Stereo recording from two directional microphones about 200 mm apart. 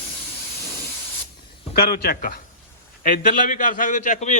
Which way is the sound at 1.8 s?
50° left (ahead or behind).